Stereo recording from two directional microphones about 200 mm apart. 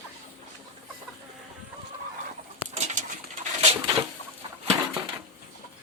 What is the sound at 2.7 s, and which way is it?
Pigeon, 35° right (ahead or behind).